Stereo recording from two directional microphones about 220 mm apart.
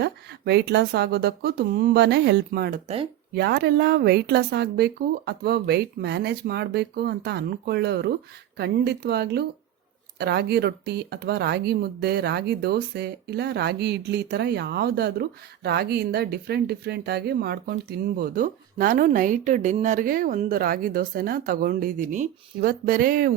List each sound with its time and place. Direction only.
0.0 s speech: 50° right (ahead or behind)
2.8 s speech: 25° right (ahead or behind)
3.3 s speech: 45° right (ahead or behind)